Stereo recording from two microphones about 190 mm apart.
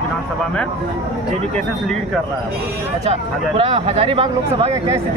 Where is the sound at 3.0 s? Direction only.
30° right (ahead or behind).